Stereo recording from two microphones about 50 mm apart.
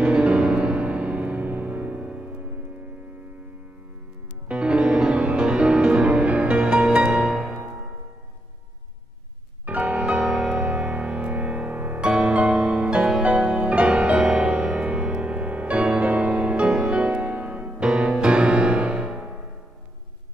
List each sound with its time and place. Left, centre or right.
0.0 s music: right
4.5 s music: right
7.1 s music: centre
9.7 s music: right
12.1 s music: right